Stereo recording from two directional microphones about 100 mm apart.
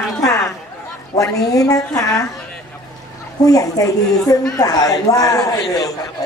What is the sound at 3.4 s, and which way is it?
Speech, 35° left (ahead or behind).